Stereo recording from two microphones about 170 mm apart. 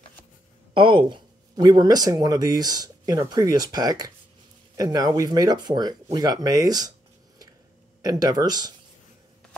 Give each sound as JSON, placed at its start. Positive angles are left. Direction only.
{"t": 0.7, "sound": "speech", "side_deg": -30}
{"t": 8.0, "sound": "speech", "side_deg": -20}